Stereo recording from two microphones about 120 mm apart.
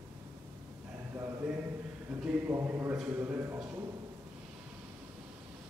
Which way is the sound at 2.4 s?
25° right (ahead or behind).